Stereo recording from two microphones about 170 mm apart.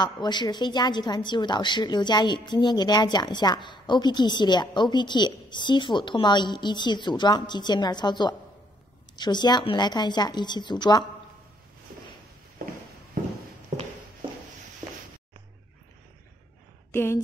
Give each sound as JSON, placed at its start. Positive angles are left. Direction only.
{"t": 0.0, "sound": "a woman's voice", "side_deg": 25}
{"t": 16.9, "sound": "speech", "side_deg": 15}